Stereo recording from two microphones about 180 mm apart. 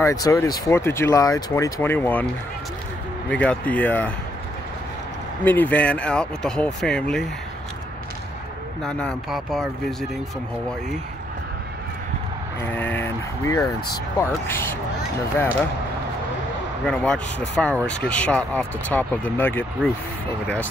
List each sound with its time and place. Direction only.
0.0 s speech: 20° left (ahead or behind)
3.3 s speech: 5° left (ahead or behind)
5.4 s speech: 10° left (ahead or behind)
8.8 s speech: centre (ahead or behind)
12.6 s speech: 10° left (ahead or behind)
16.8 s speech: 5° left (ahead or behind)